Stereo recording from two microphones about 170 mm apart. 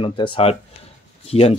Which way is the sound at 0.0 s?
30° left (ahead or behind).